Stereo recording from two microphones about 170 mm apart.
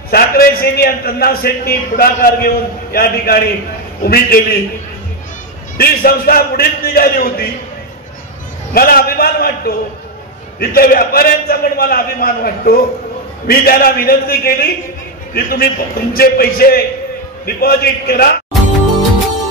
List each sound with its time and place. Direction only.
0.1 s a man's voice: 60° left (ahead or behind)
5.8 s a man's voice: 60° left (ahead or behind)
8.7 s a man's voice: 60° left (ahead or behind)